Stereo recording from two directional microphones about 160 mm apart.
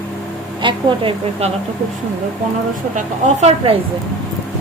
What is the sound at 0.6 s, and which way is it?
Speech, 35° right (ahead or behind).